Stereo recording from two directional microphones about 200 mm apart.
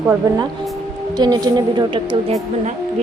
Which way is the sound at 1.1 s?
20° right (ahead or behind).